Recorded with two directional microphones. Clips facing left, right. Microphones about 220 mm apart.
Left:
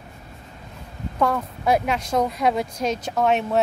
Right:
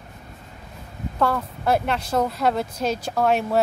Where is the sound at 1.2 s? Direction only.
Centre (ahead or behind).